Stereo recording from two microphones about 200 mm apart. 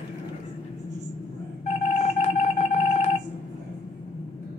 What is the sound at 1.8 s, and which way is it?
Music, 35° left (ahead or behind).